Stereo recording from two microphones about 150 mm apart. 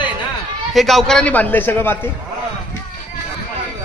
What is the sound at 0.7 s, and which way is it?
A man's voice, centre (ahead or behind).